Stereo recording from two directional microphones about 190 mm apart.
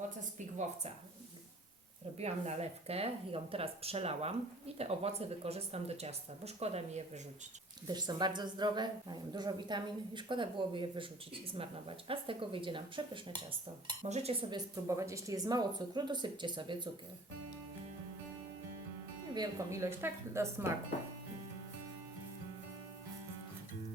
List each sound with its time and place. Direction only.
2.1 s speech: 35° right (ahead or behind)
7.9 s a woman's voice: 20° right (ahead or behind)
14.5 s a woman's voice: 15° right (ahead or behind)
19.3 s speech: 20° right (ahead or behind)